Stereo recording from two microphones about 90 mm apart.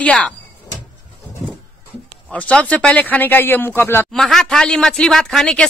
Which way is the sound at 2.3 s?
15° left (ahead or behind).